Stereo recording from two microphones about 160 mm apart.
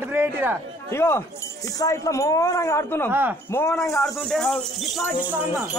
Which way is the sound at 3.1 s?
10° right (ahead or behind).